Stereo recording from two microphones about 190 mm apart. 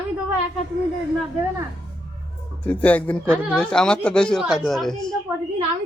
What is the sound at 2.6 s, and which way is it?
Speech, 10° left (ahead or behind).